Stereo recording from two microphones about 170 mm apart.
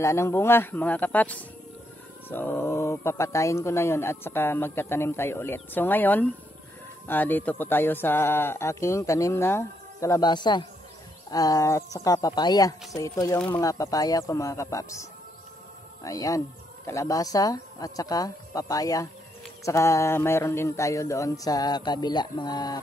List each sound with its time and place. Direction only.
0.0 s speech: 15° left (ahead or behind)